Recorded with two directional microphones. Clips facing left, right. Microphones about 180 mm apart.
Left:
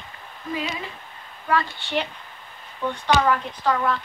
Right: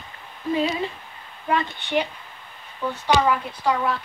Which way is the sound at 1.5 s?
20° right (ahead or behind).